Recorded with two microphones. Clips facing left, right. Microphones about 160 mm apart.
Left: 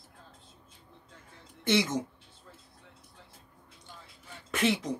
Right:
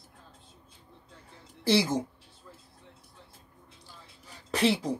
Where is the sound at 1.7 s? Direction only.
30° right (ahead or behind).